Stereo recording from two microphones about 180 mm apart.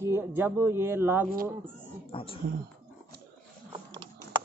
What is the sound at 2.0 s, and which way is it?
Speech, 30° left (ahead or behind).